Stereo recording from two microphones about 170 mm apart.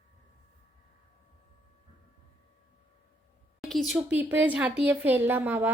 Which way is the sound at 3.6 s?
Centre (ahead or behind).